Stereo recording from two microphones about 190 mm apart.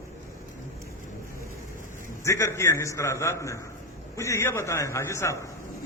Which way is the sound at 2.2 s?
15° left (ahead or behind).